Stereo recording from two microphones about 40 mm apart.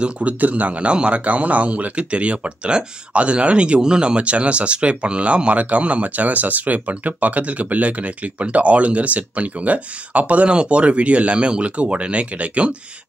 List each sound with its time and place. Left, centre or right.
0.0 s a man's voice: right
10.5 s a man's voice: right